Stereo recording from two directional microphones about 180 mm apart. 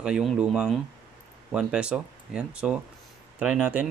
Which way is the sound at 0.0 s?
5° right (ahead or behind).